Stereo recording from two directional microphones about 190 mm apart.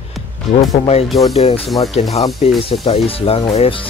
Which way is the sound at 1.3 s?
30° left (ahead or behind).